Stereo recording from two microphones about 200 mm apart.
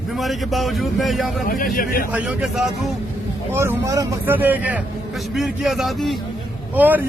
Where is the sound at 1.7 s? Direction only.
45° left (ahead or behind).